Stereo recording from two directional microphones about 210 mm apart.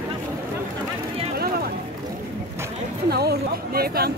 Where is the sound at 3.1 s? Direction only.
50° right (ahead or behind).